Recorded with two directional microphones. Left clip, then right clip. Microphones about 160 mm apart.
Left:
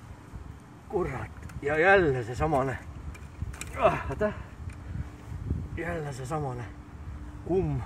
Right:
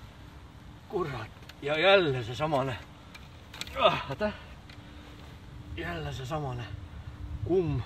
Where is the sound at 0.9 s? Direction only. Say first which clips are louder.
Left 2 dB; 20° right (ahead or behind).